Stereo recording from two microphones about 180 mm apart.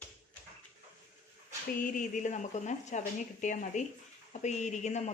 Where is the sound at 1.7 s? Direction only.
45° left (ahead or behind).